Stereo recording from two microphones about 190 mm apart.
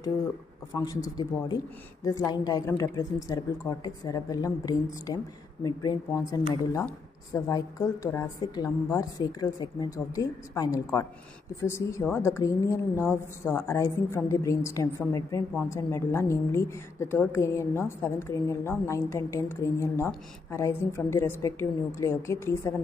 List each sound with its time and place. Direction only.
0.7 s a woman's voice: 20° left (ahead or behind)